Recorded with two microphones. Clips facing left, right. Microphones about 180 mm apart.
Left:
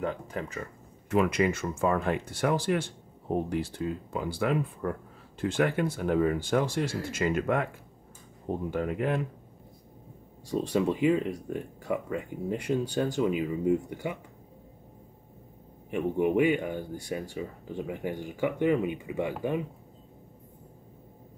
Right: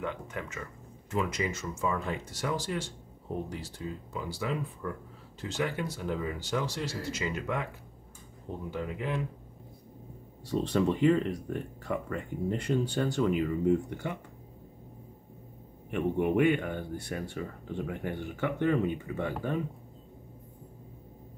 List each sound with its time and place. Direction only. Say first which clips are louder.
0.0 s speech: left 4 dB; 35° left (ahead or behind)
1.1 s speech: left 7 dB; 65° left (ahead or behind)
10.5 s speech: left 1 dB; 10° left (ahead or behind)
15.9 s speech: left 2 dB; 10° left (ahead or behind)